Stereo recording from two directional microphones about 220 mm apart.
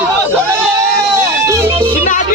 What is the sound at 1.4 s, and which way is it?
Music, 15° right (ahead or behind).